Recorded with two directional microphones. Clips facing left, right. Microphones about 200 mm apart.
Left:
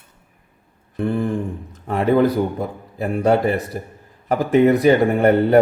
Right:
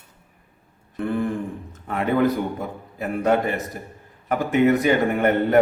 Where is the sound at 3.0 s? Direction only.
30° left (ahead or behind).